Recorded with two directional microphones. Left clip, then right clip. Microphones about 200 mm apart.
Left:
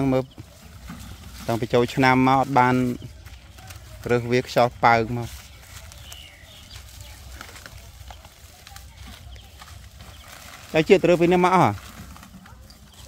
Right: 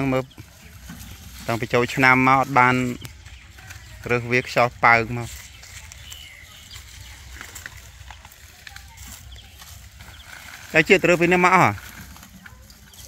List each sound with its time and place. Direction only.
0.0 s speech: 10° left (ahead or behind)
1.5 s speech: 10° left (ahead or behind)
4.2 s speech: 15° left (ahead or behind)
10.7 s speech: 5° left (ahead or behind)